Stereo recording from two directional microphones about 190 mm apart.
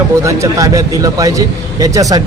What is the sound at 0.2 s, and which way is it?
A man's voice, 15° right (ahead or behind).